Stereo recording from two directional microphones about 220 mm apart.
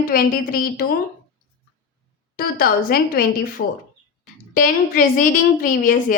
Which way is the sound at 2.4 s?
40° left (ahead or behind).